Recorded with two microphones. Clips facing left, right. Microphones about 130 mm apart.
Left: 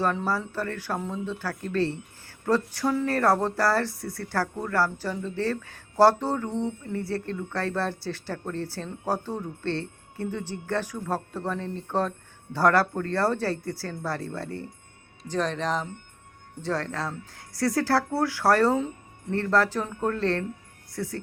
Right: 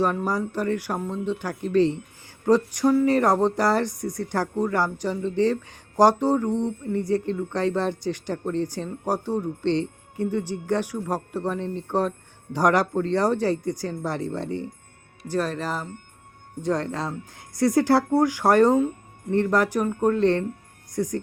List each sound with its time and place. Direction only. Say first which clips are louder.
0.0 s speech: right 3 dB; 15° right (ahead or behind)
15.3 s speech: right 1 dB; 5° right (ahead or behind)